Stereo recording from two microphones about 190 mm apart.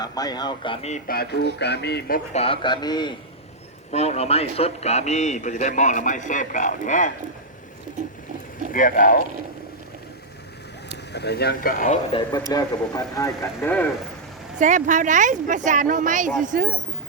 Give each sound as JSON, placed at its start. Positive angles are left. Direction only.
{"t": 0.0, "sound": "speech", "side_deg": 20}
{"t": 1.0, "sound": "speech", "side_deg": 55}
{"t": 2.3, "sound": "speech", "side_deg": 30}
{"t": 3.9, "sound": "a man's voice", "side_deg": 35}
{"t": 8.7, "sound": "speech", "side_deg": 45}
{"t": 10.9, "sound": "speech", "side_deg": 60}
{"t": 12.5, "sound": "speech", "side_deg": 20}
{"t": 14.6, "sound": "speech", "side_deg": -40}